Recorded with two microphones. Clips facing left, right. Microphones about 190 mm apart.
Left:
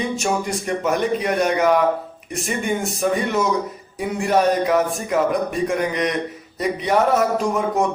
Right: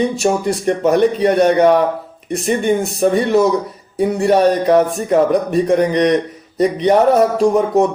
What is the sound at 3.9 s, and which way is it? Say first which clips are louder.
Speech: right 6 dB; 35° right (ahead or behind).